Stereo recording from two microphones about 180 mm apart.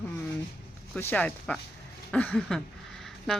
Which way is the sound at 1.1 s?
5° left (ahead or behind).